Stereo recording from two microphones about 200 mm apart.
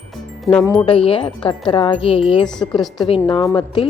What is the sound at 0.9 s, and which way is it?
Speech, 25° left (ahead or behind).